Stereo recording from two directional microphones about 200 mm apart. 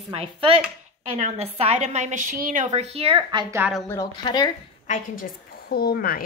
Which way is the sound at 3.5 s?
10° right (ahead or behind).